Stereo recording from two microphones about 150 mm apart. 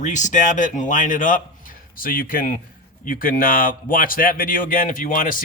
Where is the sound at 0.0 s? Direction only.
55° left (ahead or behind).